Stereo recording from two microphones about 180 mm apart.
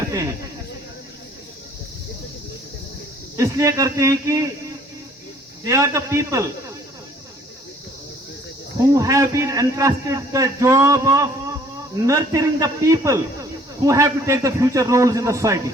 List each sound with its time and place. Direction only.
0.1 s speech: 20° right (ahead or behind)
3.3 s a man's voice: 15° right (ahead or behind)
5.6 s a man's voice: 15° right (ahead or behind)
8.8 s a man's voice: 15° right (ahead or behind)